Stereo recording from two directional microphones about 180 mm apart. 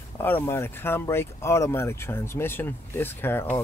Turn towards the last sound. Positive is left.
turn(degrees=15)  # may be behind; listen again after turning